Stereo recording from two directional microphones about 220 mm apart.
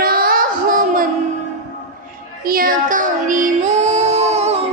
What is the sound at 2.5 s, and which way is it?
Music, 40° right (ahead or behind).